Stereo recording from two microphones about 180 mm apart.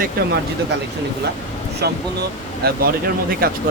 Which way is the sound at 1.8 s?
65° right (ahead or behind).